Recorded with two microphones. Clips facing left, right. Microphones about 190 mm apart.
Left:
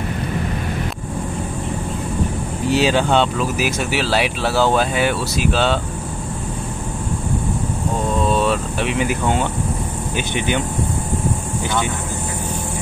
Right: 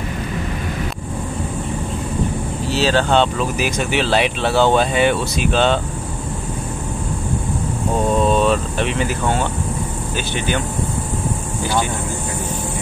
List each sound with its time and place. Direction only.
2.7 s speech: 10° left (ahead or behind)
8.5 s speech: 10° left (ahead or behind)